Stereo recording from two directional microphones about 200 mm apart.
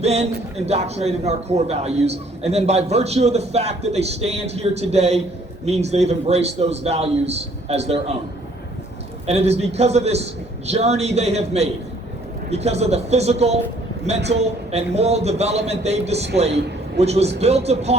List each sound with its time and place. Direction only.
0.0 s a man's voice: 30° right (ahead or behind)
9.2 s a man's voice: 30° right (ahead or behind)
14.7 s a man's voice: 30° right (ahead or behind)